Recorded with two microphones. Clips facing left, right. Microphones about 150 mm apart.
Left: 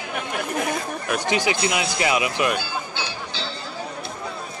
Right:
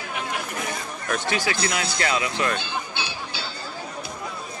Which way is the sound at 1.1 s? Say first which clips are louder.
Left 3 dB; 15° left (ahead or behind).